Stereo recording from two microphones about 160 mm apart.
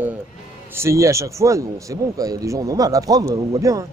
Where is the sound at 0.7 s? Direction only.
15° right (ahead or behind).